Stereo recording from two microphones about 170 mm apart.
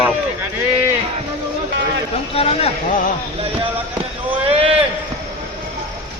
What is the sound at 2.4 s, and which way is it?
Speech, 35° left (ahead or behind).